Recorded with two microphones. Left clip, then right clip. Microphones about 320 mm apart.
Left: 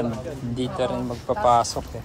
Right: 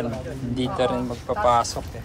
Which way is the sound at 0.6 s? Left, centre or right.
Centre.